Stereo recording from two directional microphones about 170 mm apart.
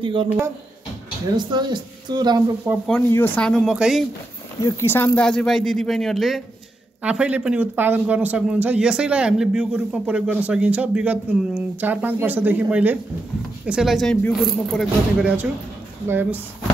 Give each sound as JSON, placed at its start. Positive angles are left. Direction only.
{"t": 0.0, "sound": "speech", "side_deg": -30}
{"t": 1.3, "sound": "speech", "side_deg": -25}
{"t": 2.7, "sound": "a man's voice", "side_deg": -15}
{"t": 3.1, "sound": "speech", "side_deg": 10}
{"t": 4.6, "sound": "a man's voice", "side_deg": 20}